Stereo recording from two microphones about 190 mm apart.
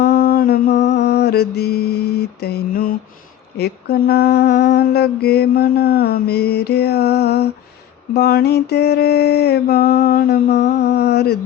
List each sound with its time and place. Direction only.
0.0 s music: 55° left (ahead or behind)
3.6 s mantra: 55° left (ahead or behind)